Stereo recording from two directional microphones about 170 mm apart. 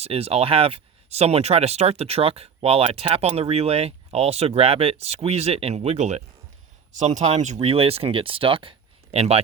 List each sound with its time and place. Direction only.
0.0 s speech: 35° right (ahead or behind)